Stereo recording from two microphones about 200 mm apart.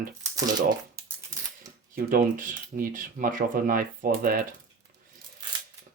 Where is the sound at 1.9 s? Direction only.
45° right (ahead or behind).